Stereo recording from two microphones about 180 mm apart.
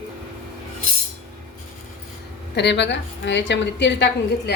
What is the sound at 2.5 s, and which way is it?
A woman's voice, 70° left (ahead or behind).